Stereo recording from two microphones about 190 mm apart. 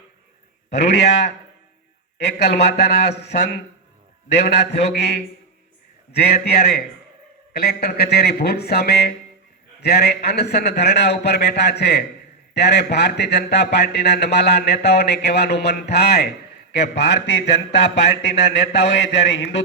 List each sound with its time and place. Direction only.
0.7 s speech: 60° left (ahead or behind)